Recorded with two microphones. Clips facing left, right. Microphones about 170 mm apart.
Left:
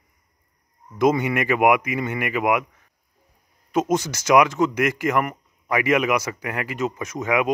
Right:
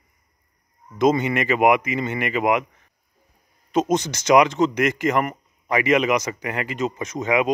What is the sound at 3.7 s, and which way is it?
Speech, 5° left (ahead or behind).